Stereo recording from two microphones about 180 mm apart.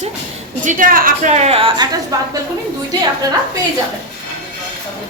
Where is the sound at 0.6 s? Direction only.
45° right (ahead or behind); by 1.9 s 30° right (ahead or behind).